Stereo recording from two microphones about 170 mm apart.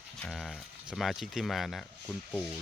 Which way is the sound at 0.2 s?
Centre (ahead or behind).